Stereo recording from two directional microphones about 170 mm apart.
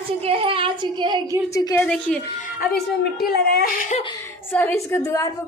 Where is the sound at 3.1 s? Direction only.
65° left (ahead or behind).